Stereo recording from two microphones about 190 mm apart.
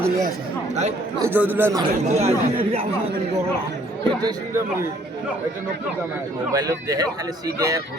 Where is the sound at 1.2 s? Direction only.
10° right (ahead or behind).